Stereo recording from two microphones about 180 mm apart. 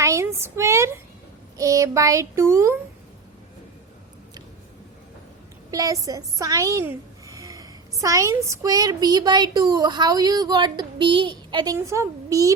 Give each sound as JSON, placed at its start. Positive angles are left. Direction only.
{"t": 0.0, "sound": "speech", "side_deg": -15}
{"t": 1.5, "sound": "child singing", "side_deg": -20}
{"t": 5.7, "sound": "a woman's voice", "side_deg": -20}